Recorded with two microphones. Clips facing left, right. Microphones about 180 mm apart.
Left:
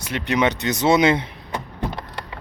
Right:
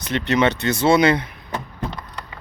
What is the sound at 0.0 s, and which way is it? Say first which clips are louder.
Speech: right 2 dB; 10° left (ahead or behind).